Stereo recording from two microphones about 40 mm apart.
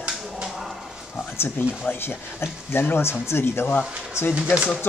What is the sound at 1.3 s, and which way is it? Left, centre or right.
Speech, left.